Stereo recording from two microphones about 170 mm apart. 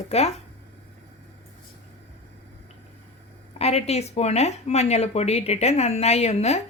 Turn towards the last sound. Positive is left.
turn(degrees=40)  # may be behind; listen again after turning